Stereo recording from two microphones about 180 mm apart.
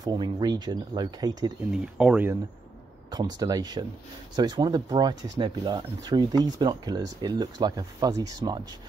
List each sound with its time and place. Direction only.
0.0 s speech: 20° right (ahead or behind)
1.7 s speech: 5° right (ahead or behind)
3.1 s speech: 20° right (ahead or behind)